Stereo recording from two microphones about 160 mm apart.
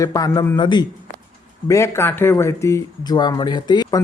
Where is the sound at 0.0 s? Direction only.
20° left (ahead or behind).